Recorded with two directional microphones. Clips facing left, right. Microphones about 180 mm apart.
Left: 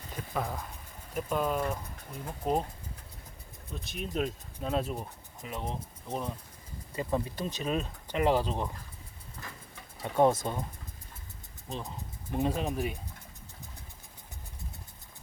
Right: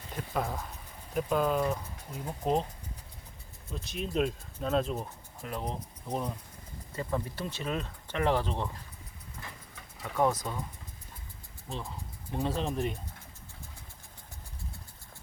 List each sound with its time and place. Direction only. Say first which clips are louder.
0.2 s speech: right 1 dB; centre (ahead or behind)
3.7 s speech: right 2 dB; centre (ahead or behind)
6.9 s speech: left 2 dB; 15° left (ahead or behind)
10.0 s speech: left 4 dB; 30° left (ahead or behind)
11.7 s speech: left 1 dB; 20° left (ahead or behind)